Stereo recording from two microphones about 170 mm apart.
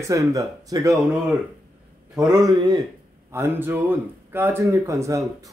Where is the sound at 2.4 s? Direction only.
25° right (ahead or behind).